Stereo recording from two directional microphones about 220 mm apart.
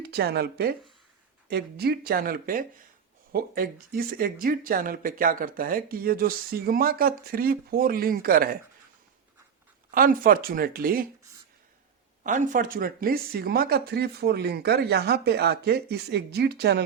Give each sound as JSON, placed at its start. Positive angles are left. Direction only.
{"t": 0.0, "sound": "speech", "side_deg": -45}
{"t": 9.9, "sound": "speech", "side_deg": -40}
{"t": 12.2, "sound": "speech", "side_deg": -35}